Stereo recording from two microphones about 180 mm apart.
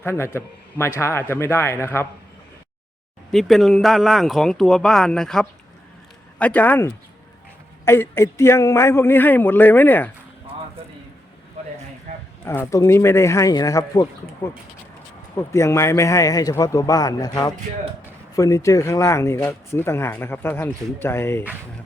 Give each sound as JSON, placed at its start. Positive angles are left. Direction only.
{"t": 0.0, "sound": "speech", "side_deg": 15}
{"t": 3.3, "sound": "speech", "side_deg": 0}
{"t": 12.1, "sound": "a sound", "side_deg": -40}
{"t": 12.5, "sound": "a man's voice", "side_deg": 15}